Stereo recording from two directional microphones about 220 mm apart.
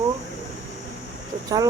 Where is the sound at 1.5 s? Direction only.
15° right (ahead or behind).